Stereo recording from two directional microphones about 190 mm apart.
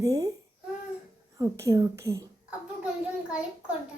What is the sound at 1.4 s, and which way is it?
A woman's voice, 15° right (ahead or behind).